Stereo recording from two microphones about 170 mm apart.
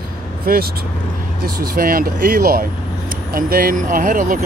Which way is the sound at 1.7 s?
60° right (ahead or behind).